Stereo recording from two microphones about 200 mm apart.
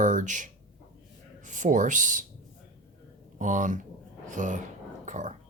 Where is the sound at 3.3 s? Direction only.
40° right (ahead or behind).